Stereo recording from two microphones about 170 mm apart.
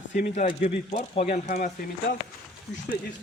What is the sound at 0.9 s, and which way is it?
Speech, 35° left (ahead or behind).